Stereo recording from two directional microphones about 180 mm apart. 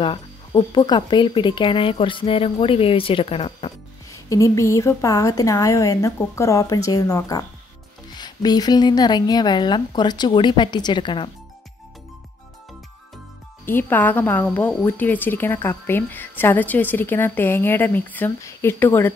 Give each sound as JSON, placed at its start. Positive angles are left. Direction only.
{"t": 0.0, "sound": "speech", "side_deg": 25}
{"t": 4.1, "sound": "a woman's voice", "side_deg": 15}
{"t": 13.7, "sound": "a woman's voice", "side_deg": 10}